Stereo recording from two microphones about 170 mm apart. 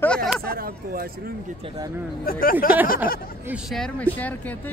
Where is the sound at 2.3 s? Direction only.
55° left (ahead or behind).